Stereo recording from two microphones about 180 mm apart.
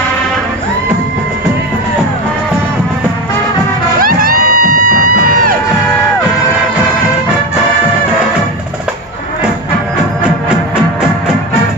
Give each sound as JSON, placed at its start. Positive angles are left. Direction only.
{"t": 4.0, "sound": "music", "side_deg": -55}